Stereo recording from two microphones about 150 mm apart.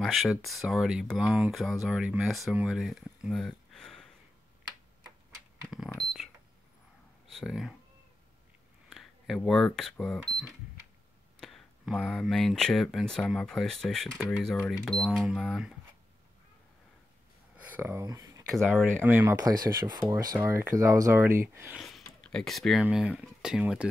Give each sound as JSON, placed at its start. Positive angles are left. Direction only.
{"t": 0.0, "sound": "speech", "side_deg": 0}
{"t": 7.2, "sound": "speech", "side_deg": 0}
{"t": 8.9, "sound": "speech", "side_deg": 0}
{"t": 11.3, "sound": "speech", "side_deg": 0}
{"t": 17.6, "sound": "speech", "side_deg": -15}
{"t": 19.4, "sound": "speech", "side_deg": -25}
{"t": 21.7, "sound": "speech", "side_deg": 0}